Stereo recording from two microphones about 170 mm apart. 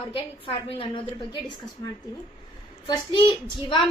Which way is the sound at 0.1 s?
30° left (ahead or behind).